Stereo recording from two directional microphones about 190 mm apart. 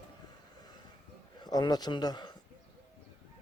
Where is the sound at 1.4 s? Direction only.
20° left (ahead or behind).